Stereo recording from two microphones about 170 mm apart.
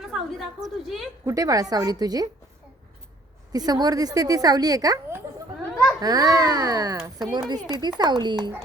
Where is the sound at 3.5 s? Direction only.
25° right (ahead or behind).